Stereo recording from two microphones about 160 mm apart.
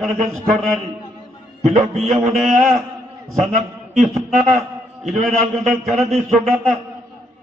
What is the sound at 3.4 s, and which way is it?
A man's voice, centre (ahead or behind).